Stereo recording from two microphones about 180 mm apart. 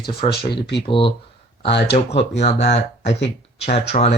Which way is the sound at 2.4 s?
35° left (ahead or behind).